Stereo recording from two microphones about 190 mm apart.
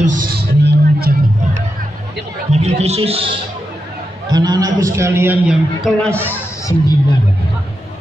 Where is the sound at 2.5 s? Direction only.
35° right (ahead or behind).